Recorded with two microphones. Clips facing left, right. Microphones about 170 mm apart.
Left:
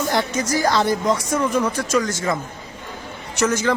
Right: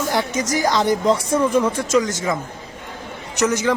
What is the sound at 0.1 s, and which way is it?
Speech, 15° right (ahead or behind).